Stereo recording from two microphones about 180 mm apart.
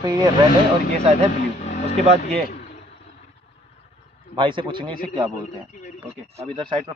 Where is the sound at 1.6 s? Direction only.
40° left (ahead or behind).